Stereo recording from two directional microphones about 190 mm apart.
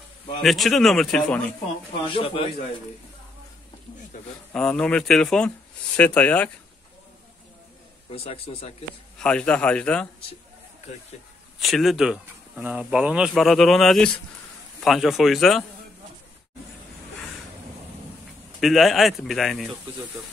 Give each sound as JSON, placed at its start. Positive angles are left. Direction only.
{"t": 0.4, "sound": "speech", "side_deg": 0}
{"t": 2.0, "sound": "speech", "side_deg": 30}
{"t": 4.5, "sound": "speech", "side_deg": 5}
{"t": 8.1, "sound": "speech", "side_deg": 30}
{"t": 9.2, "sound": "speech", "side_deg": 5}
{"t": 11.6, "sound": "speech", "side_deg": 0}
{"t": 18.6, "sound": "speech", "side_deg": 0}